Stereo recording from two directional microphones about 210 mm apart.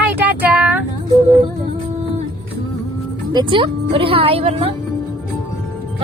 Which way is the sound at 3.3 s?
20° right (ahead or behind).